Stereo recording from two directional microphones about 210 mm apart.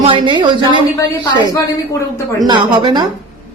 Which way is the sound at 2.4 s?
20° right (ahead or behind).